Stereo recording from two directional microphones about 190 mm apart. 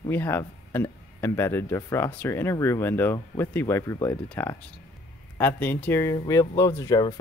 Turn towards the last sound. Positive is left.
turn(degrees=20)  # may be behind; listen again after turning